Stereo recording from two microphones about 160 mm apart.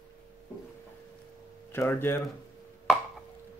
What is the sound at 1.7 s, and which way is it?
Speech, 15° left (ahead or behind).